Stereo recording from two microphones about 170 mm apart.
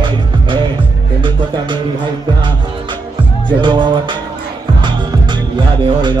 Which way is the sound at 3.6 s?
25° right (ahead or behind).